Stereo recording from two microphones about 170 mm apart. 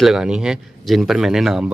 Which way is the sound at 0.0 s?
5° right (ahead or behind).